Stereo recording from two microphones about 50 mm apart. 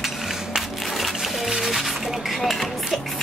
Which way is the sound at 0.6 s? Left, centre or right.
Centre.